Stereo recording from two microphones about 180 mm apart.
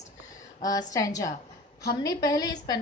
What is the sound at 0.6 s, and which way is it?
A woman's voice, 20° left (ahead or behind).